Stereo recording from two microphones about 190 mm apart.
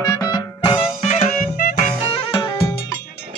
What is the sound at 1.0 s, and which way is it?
Music, 35° left (ahead or behind).